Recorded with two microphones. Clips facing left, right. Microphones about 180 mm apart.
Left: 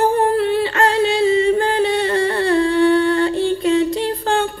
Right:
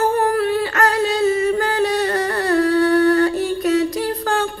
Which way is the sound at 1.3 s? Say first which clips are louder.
Left 3 dB; 25° left (ahead or behind).